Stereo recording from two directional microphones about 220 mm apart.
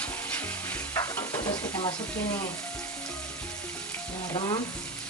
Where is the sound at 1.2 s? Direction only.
20° left (ahead or behind).